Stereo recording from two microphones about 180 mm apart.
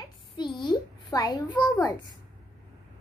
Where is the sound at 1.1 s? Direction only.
20° left (ahead or behind).